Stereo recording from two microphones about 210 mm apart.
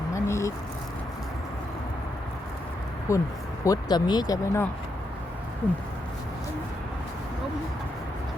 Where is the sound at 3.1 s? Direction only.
15° left (ahead or behind).